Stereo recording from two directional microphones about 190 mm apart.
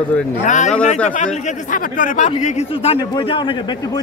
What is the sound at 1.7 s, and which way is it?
Speech, 45° left (ahead or behind).